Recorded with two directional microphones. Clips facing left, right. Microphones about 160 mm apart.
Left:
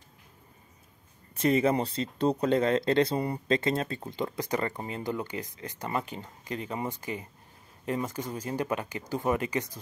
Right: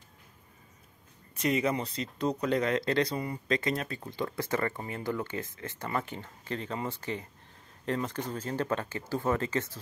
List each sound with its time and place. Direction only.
1.3 s speech: 30° left (ahead or behind); by 9.8 s 15° left (ahead or behind)